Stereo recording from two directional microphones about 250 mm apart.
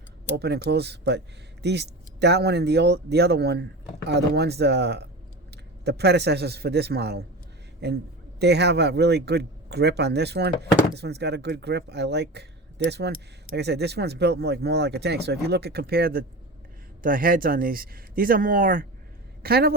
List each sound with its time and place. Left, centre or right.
0.3 s speech: right
8.4 s a woman's voice: right